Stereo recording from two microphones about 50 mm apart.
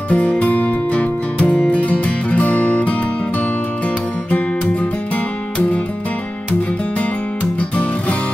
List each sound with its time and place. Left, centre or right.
0.1 s music: left
7.7 s music: left